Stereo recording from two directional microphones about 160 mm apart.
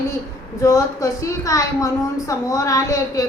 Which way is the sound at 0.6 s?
20° left (ahead or behind).